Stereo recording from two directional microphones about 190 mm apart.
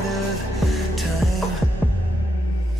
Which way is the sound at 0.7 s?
Centre (ahead or behind).